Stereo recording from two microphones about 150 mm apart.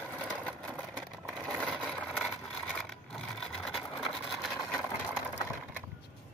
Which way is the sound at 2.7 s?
5° left (ahead or behind).